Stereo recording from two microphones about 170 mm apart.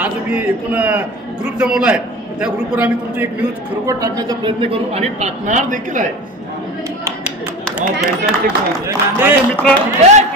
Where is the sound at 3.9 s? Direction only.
20° right (ahead or behind); by 6.0 s 45° right (ahead or behind).